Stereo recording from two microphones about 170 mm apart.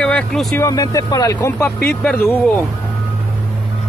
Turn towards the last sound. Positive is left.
turn(degrees=5)  # may be behind; listen again after turning